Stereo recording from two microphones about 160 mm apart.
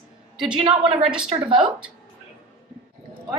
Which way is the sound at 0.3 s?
5° right (ahead or behind).